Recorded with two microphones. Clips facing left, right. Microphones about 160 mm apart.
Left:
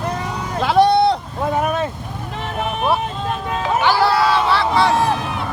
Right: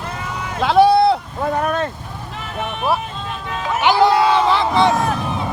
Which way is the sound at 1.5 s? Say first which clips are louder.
Left 1 dB; 10° left (ahead or behind).